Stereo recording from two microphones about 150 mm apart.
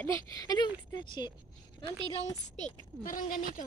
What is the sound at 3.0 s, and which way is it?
Speech, 65° left (ahead or behind).